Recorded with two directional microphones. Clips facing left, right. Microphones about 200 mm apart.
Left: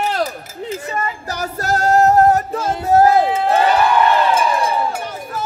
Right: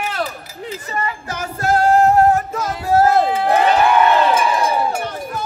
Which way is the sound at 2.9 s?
15° left (ahead or behind).